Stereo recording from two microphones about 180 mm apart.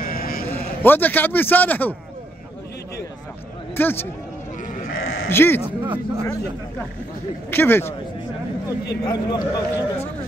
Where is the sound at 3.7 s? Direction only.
10° left (ahead or behind).